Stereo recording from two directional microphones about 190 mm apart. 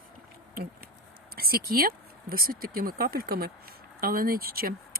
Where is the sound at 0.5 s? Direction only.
50° right (ahead or behind).